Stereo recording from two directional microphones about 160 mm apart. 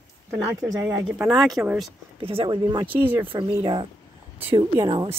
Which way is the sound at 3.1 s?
10° right (ahead or behind).